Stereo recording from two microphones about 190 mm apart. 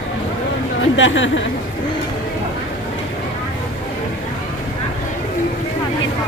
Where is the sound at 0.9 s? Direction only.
80° left.